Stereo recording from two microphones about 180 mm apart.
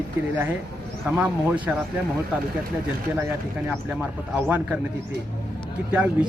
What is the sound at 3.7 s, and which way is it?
Speech, 5° right (ahead or behind).